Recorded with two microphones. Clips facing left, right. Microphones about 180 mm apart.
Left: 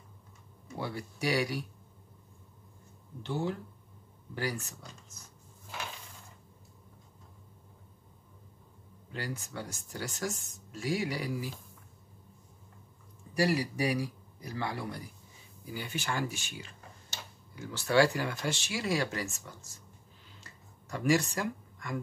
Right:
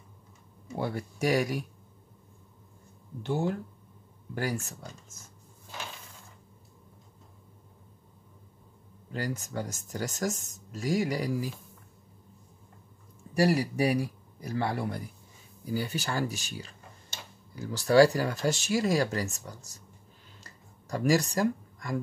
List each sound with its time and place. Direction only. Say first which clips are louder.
0.7 s speech: right 5 dB; 50° right (ahead or behind)
3.2 s speech: right 4 dB; 50° right (ahead or behind)
9.1 s speech: right 5 dB; 45° right (ahead or behind)
13.4 s speech: right 4 dB; 45° right (ahead or behind)
15.6 s speech: right 6 dB; 40° right (ahead or behind)
20.3 s a sound: right 1 dB; 40° right (ahead or behind)